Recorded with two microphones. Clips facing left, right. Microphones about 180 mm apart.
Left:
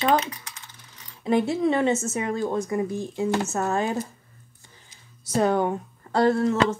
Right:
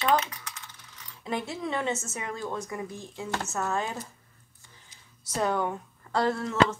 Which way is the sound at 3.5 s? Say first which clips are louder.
Left 5 dB; 50° left (ahead or behind).